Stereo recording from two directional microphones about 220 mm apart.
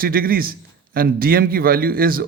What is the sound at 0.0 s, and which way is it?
Speech, 40° right (ahead or behind).